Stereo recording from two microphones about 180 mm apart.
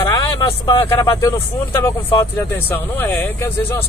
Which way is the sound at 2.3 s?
10° left (ahead or behind).